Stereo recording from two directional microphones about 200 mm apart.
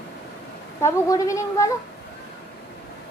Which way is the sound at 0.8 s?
15° left (ahead or behind).